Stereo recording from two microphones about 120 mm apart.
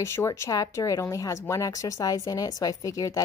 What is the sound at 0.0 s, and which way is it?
A woman's voice, 20° left (ahead or behind).